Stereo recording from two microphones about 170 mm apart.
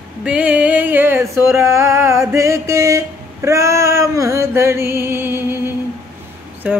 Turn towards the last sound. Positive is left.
turn(degrees=-10)  # may be behind; listen again after turning